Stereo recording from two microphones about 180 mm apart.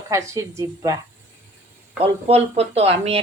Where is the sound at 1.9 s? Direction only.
35° right (ahead or behind).